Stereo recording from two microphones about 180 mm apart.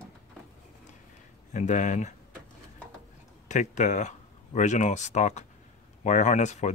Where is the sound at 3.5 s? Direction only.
40° left (ahead or behind).